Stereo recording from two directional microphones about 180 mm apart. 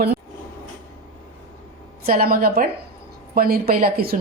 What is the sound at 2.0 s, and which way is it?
A woman's voice, 55° right (ahead or behind).